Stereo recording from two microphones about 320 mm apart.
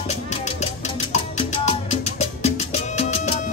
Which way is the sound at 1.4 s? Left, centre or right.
Centre.